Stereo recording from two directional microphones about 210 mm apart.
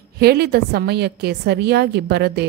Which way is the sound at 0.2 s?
50° right (ahead or behind).